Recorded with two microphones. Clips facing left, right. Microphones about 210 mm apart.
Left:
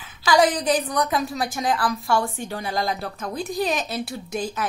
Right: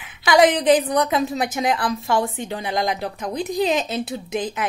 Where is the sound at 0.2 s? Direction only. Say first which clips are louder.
Right 3 dB; 20° right (ahead or behind).